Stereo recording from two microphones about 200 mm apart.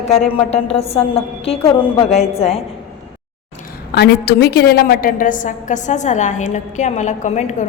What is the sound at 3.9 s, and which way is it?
A woman's voice, 50° left (ahead or behind).